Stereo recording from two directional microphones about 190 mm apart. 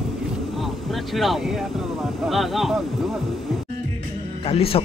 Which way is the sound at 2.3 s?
Centre (ahead or behind).